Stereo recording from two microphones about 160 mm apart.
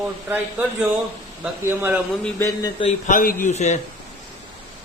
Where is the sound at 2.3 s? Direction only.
20° left (ahead or behind).